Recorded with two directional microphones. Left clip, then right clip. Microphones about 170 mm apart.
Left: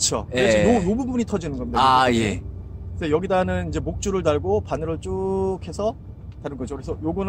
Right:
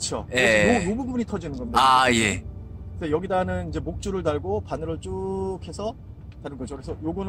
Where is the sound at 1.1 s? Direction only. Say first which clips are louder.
Left 4 dB; 25° left (ahead or behind).